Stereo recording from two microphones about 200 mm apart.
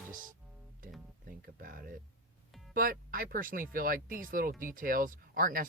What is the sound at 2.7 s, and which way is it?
Speech, 45° right (ahead or behind).